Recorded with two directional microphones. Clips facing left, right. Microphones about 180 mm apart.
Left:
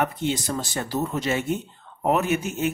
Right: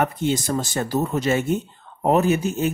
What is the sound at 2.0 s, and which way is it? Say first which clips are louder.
Speech: right 4 dB; 35° right (ahead or behind).